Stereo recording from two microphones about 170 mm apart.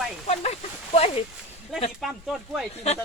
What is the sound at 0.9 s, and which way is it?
Speech, 35° left (ahead or behind).